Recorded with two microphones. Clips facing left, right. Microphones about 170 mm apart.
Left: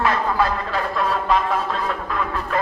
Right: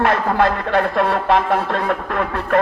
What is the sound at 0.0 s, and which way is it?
Speech, 65° right (ahead or behind).